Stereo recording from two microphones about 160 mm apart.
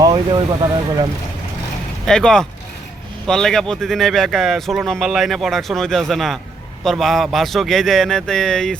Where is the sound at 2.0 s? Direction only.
5° left (ahead or behind).